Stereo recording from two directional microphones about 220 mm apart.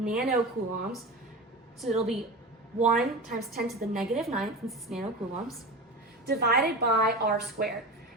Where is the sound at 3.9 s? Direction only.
Centre (ahead or behind).